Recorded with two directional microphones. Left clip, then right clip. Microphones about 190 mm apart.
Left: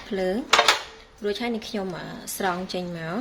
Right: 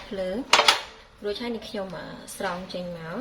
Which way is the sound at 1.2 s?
55° left (ahead or behind).